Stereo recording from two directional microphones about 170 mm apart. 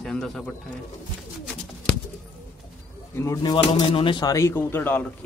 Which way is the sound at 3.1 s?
15° left (ahead or behind).